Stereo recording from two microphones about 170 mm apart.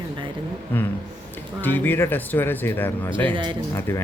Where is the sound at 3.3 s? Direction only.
30° right (ahead or behind).